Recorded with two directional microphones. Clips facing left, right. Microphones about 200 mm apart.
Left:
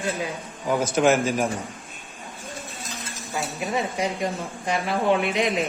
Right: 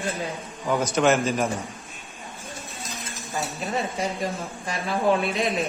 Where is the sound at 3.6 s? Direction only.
15° left (ahead or behind).